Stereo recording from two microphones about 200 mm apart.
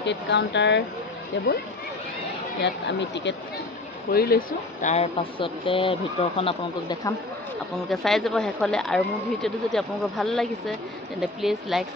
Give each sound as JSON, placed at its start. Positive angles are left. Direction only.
{"t": 0.0, "sound": "speech", "side_deg": 60}
{"t": 2.6, "sound": "speech", "side_deg": 60}
{"t": 4.1, "sound": "speech", "side_deg": 50}
{"t": 7.9, "sound": "speech", "side_deg": 0}